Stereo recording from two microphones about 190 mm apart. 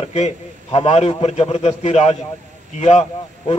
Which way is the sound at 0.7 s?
30° left (ahead or behind).